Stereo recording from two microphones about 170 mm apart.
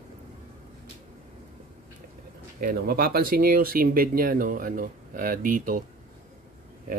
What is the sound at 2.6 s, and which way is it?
Speech, 65° right (ahead or behind).